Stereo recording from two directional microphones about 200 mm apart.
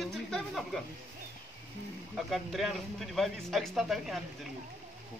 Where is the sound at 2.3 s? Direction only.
Centre (ahead or behind).